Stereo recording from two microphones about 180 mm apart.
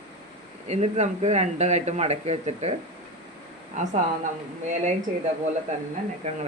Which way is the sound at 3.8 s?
40° right (ahead or behind).